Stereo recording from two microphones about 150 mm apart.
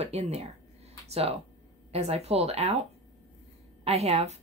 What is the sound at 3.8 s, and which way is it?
Speech, 45° right (ahead or behind).